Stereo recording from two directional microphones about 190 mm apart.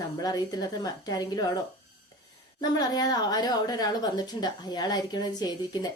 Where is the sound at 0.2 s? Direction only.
20° left (ahead or behind).